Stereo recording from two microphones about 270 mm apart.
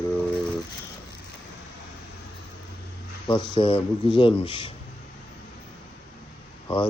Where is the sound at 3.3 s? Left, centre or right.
Centre.